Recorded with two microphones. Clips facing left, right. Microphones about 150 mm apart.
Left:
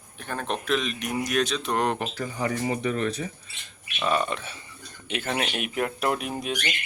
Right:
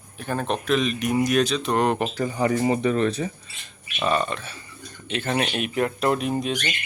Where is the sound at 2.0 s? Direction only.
20° right (ahead or behind).